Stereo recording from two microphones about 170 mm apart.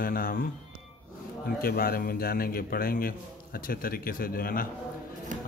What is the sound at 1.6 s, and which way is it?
A man's voice, 60° left (ahead or behind).